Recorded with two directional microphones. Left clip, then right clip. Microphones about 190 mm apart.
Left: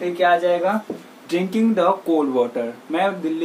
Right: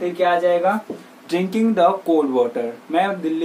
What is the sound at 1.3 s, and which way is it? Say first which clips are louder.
Speech: right 1 dB; 15° right (ahead or behind).